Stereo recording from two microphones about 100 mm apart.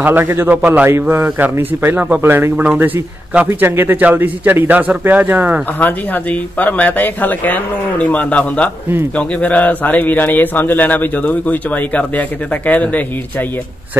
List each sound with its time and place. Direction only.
0.0 s a man's voice: 20° right (ahead or behind)
5.8 s a man's voice: 15° left (ahead or behind)